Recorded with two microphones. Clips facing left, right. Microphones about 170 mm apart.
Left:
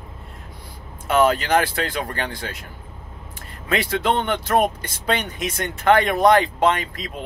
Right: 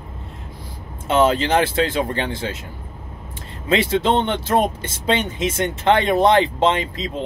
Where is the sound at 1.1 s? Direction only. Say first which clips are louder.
Right 1 dB; 25° right (ahead or behind).